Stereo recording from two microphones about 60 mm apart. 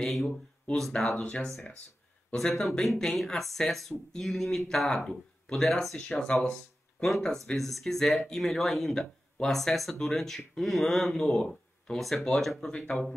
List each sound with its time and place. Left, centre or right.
0.0 s speech: centre
1.1 s speech: centre
2.3 s speech: centre
6.0 s speech: centre